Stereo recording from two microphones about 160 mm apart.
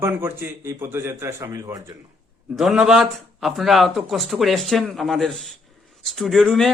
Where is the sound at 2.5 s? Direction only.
5° right (ahead or behind).